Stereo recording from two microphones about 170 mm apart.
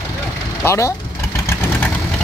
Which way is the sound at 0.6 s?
15° left (ahead or behind).